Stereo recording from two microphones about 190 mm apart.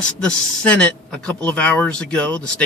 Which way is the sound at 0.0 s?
5° left (ahead or behind).